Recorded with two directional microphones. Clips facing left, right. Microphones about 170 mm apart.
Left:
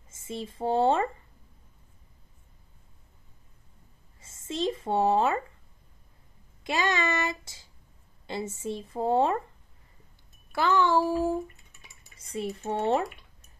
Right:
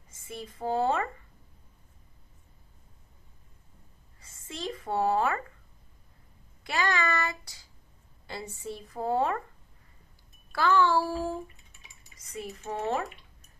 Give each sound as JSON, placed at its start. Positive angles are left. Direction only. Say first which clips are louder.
{"t": 0.1, "sound": "speech", "louder": "left 5 dB", "side_deg": 25}
{"t": 4.2, "sound": "speech", "louder": "left 8 dB", "side_deg": 25}
{"t": 6.6, "sound": "a woman's voice", "louder": "left 2 dB", "side_deg": 20}
{"t": 10.5, "sound": "a woman's voice", "louder": "left 1 dB", "side_deg": 20}
{"t": 12.2, "sound": "a woman's voice", "louder": "left 6 dB", "side_deg": 25}